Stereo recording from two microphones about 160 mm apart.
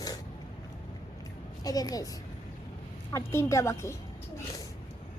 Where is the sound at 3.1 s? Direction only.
20° left (ahead or behind).